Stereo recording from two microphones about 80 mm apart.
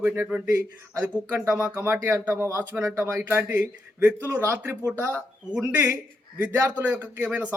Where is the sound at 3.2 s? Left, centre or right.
Right.